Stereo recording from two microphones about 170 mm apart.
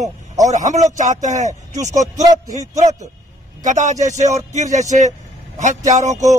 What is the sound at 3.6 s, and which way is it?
A man's voice, 45° right (ahead or behind).